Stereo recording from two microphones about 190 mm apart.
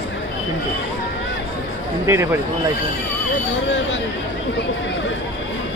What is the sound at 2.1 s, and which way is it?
Speech, 15° right (ahead or behind).